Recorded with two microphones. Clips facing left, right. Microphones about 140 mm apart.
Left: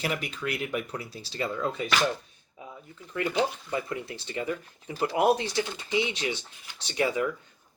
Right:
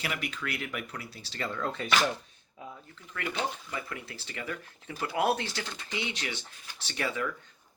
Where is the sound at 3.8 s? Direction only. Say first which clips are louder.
Left 7 dB; 20° left (ahead or behind).